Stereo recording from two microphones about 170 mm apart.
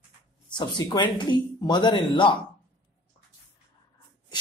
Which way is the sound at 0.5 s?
25° left (ahead or behind).